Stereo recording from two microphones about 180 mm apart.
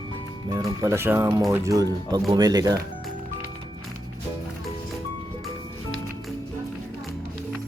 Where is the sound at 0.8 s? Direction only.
15° right (ahead or behind).